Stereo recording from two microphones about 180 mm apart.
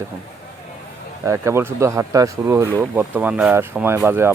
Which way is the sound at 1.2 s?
15° right (ahead or behind).